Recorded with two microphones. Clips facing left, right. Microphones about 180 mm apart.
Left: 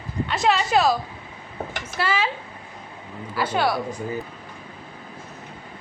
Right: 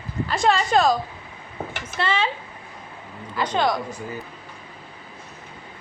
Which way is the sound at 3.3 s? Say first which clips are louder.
Even; 5° left (ahead or behind).